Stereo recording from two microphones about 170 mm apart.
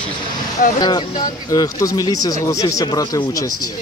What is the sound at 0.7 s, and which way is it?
Speech, 25° left (ahead or behind).